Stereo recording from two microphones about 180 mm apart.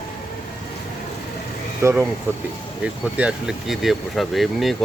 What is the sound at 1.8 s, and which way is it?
Speech, 15° right (ahead or behind).